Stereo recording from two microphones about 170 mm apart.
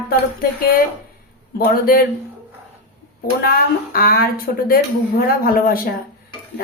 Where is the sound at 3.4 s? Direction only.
60° left (ahead or behind).